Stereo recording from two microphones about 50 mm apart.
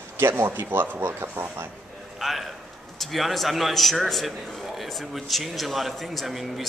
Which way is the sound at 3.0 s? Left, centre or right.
Centre.